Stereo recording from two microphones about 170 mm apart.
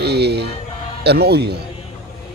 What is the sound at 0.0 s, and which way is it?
Music, 75° right (ahead or behind).